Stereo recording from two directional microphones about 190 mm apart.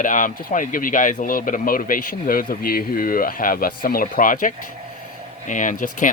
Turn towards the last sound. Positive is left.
turn(degrees=45)  # may be behind; listen again after turning